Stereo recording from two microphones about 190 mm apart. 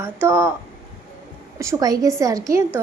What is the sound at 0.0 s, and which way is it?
Speech, 10° right (ahead or behind).